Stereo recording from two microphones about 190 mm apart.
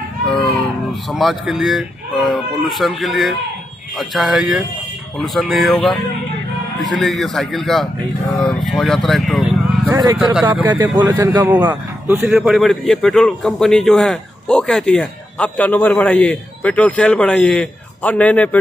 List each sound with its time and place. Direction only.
0.3 s livestock: centre (ahead or behind)
1.1 s a man's voice: centre (ahead or behind)
9.8 s a man's voice: 20° right (ahead or behind); by 18.6 s 10° left (ahead or behind)